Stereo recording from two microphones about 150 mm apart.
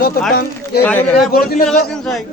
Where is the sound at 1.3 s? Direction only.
85° left.